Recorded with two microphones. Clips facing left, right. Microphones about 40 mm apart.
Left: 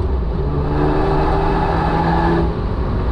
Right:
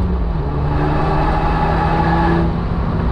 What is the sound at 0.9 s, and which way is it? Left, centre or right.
Vehicle, right.